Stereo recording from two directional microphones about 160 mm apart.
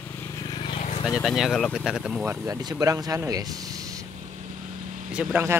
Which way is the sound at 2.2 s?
20° right (ahead or behind).